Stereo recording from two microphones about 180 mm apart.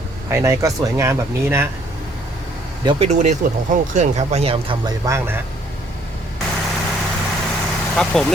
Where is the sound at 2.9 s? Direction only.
35° right (ahead or behind).